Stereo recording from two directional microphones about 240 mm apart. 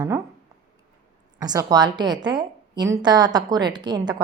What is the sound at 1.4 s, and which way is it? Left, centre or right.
A woman's voice, centre.